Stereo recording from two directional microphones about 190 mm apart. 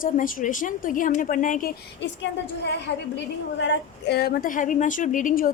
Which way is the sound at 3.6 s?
65° left (ahead or behind).